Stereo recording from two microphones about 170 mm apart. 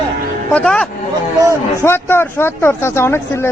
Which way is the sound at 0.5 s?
5° left (ahead or behind).